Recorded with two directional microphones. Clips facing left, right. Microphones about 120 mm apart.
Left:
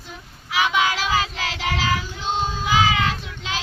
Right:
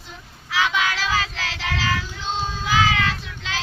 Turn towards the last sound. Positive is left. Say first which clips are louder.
# left 1 dB
turn(degrees=15)  # may be behind; listen again after turning